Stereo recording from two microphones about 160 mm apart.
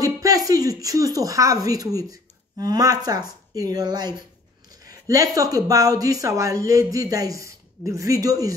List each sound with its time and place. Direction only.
0.0 s speech: 20° right (ahead or behind)